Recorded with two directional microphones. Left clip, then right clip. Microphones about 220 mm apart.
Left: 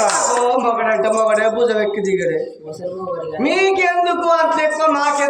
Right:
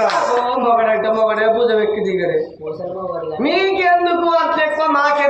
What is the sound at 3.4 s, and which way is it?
A man's voice, 25° left (ahead or behind).